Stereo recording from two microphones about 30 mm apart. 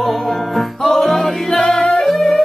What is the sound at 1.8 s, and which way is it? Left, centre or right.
Yodeling, left.